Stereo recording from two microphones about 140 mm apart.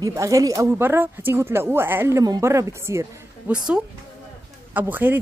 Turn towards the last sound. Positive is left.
turn(degrees=-15)  # may be behind; listen again after turning